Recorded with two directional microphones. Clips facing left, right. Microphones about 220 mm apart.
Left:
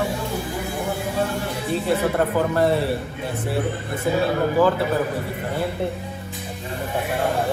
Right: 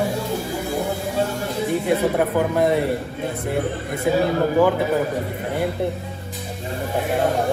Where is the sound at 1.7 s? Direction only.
15° right (ahead or behind).